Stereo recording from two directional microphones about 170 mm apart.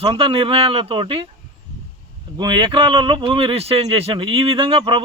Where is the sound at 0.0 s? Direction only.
30° right (ahead or behind).